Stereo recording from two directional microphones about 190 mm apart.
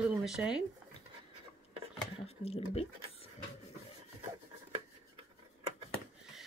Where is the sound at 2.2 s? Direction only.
35° left (ahead or behind).